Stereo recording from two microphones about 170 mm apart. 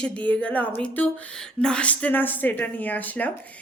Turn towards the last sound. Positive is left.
turn(degrees=10)  # may be behind; listen again after turning